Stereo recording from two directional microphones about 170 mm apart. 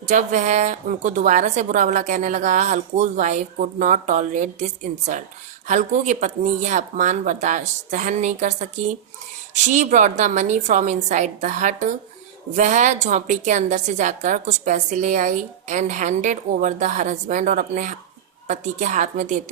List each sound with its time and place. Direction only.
0.1 s a woman's voice: 45° right (ahead or behind)